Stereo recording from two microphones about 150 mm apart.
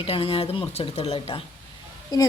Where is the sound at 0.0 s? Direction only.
35° left (ahead or behind).